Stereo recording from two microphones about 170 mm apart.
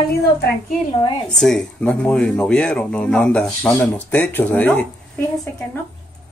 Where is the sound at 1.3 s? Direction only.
5° left (ahead or behind).